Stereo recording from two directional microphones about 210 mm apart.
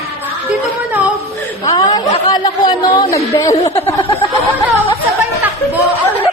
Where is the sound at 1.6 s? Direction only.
20° left (ahead or behind).